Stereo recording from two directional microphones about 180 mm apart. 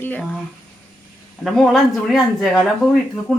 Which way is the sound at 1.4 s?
Centre (ahead or behind).